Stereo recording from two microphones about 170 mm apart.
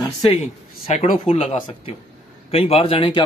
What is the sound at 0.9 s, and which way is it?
A man's voice, 45° left (ahead or behind).